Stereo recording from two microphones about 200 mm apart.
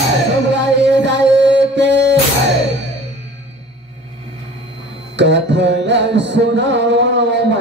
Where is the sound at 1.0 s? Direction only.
60° right (ahead or behind).